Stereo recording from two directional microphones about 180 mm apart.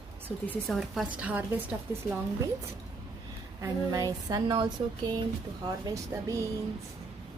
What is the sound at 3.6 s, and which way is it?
Speech, 20° right (ahead or behind).